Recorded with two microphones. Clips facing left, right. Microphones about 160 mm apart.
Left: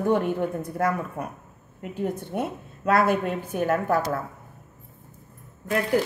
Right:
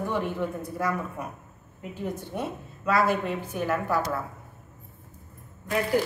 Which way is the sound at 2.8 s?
55° left (ahead or behind).